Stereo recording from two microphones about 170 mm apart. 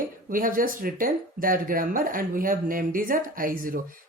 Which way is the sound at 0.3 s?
55° right (ahead or behind).